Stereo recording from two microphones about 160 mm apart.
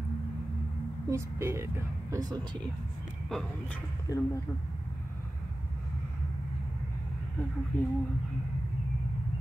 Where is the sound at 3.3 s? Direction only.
5° left (ahead or behind).